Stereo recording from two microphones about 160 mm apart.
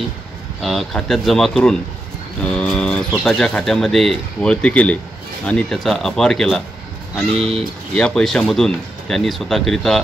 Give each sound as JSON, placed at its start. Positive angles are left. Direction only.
{"t": 0.6, "sound": "speech", "side_deg": 0}